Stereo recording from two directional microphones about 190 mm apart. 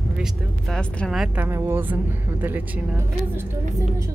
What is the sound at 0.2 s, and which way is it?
Speech, 5° left (ahead or behind).